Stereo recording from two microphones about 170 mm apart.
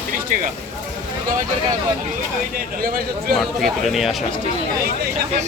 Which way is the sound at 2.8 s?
60° right (ahead or behind).